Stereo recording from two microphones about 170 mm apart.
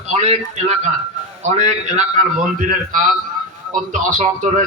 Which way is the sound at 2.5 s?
55° right (ahead or behind).